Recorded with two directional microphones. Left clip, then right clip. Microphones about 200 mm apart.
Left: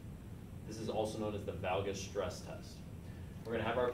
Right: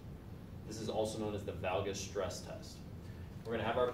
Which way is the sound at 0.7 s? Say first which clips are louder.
Right 1 dB; 10° right (ahead or behind).